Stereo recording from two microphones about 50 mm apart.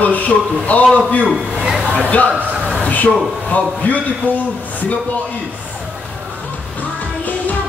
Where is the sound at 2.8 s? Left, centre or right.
Left.